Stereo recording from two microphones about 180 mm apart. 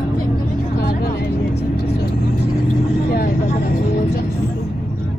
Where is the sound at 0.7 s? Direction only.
65° left (ahead or behind).